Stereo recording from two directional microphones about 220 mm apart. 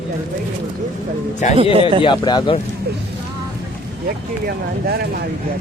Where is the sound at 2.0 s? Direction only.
20° left (ahead or behind).